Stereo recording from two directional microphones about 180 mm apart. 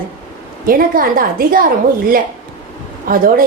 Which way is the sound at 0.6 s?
55° right (ahead or behind).